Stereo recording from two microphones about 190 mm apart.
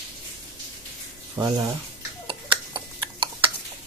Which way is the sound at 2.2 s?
25° right (ahead or behind).